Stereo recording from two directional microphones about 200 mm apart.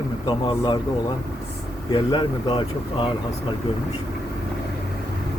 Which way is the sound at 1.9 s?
25° left (ahead or behind).